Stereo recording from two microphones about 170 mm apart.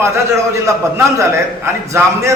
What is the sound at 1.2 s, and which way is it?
A man's voice, 15° right (ahead or behind).